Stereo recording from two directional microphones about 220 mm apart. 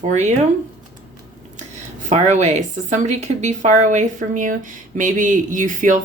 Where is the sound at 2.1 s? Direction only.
30° right (ahead or behind).